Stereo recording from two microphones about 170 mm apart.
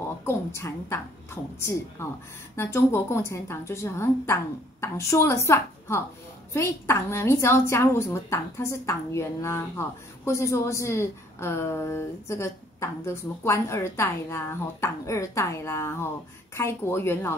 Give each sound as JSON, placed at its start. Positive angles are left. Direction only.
{"t": 0.2, "sound": "a woman's voice", "side_deg": 15}